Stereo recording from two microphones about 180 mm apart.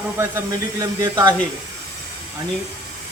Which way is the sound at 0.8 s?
20° right (ahead or behind).